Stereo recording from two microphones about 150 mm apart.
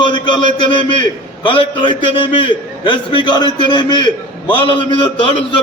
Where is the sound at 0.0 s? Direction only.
30° left (ahead or behind).